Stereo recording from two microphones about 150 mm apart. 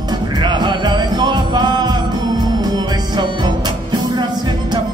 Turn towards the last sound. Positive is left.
turn(degrees=-30)  # may be behind; listen again after turning